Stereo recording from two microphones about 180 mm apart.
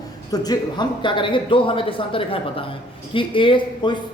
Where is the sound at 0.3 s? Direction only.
20° left (ahead or behind).